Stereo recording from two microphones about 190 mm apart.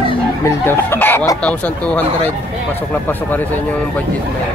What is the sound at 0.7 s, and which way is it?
Speech, 10° left (ahead or behind).